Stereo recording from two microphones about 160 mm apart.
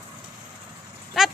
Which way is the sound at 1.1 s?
Centre (ahead or behind).